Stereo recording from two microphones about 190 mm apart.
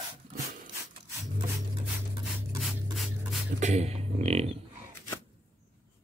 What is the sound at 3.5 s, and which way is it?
Speech, 35° right (ahead or behind).